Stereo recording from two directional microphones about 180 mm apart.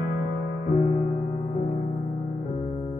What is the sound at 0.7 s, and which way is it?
Music, 35° left (ahead or behind).